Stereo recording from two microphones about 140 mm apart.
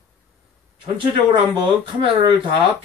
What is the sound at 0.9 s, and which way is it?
Speech, 35° right (ahead or behind).